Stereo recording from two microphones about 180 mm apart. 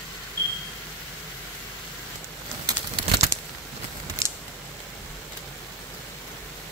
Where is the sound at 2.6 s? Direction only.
20° right (ahead or behind).